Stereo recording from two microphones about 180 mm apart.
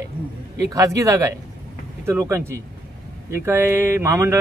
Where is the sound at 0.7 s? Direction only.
20° right (ahead or behind).